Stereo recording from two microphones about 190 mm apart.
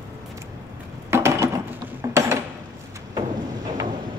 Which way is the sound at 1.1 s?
15° right (ahead or behind).